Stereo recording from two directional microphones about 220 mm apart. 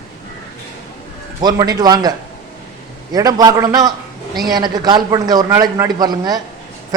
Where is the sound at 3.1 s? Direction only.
15° right (ahead or behind).